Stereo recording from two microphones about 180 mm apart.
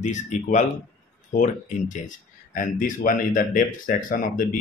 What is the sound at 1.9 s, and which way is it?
Speech, 45° left (ahead or behind).